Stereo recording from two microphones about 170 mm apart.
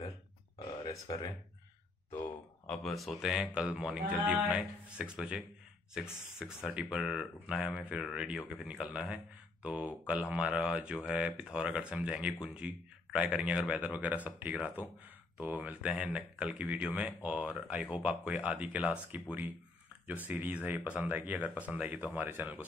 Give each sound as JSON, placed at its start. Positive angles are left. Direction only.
{"t": 0.6, "sound": "a sound", "side_deg": 25}
{"t": 2.1, "sound": "speech", "side_deg": 5}
{"t": 6.4, "sound": "speech", "side_deg": -5}